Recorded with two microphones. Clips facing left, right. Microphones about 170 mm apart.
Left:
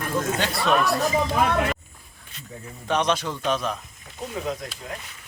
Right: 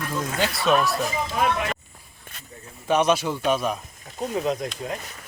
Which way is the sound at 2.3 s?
50° right (ahead or behind).